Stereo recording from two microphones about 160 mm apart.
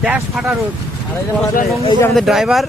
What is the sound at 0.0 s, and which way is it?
Speech, 5° right (ahead or behind).